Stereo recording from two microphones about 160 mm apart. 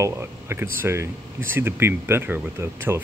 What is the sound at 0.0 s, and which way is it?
Speech, 15° right (ahead or behind).